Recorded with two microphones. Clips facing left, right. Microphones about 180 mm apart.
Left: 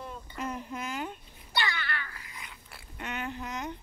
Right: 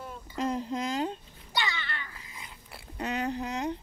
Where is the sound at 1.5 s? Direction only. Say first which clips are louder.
Left 1 dB; 20° right (ahead or behind).